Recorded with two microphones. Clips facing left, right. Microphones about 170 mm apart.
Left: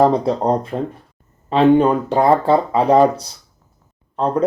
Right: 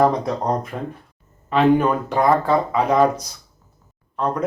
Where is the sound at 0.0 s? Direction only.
30° left (ahead or behind).